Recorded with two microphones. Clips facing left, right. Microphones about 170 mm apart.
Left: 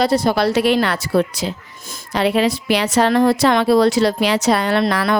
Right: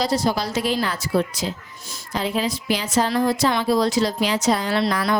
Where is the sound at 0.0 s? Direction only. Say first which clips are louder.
Left 6 dB; 60° left (ahead or behind).